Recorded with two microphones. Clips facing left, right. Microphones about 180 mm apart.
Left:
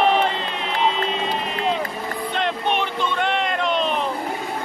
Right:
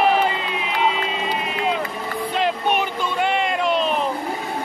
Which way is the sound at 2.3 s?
5° right (ahead or behind).